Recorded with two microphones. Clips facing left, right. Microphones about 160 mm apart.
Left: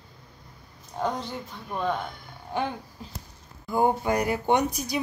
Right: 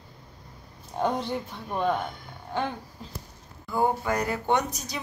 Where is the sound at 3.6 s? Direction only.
20° left (ahead or behind).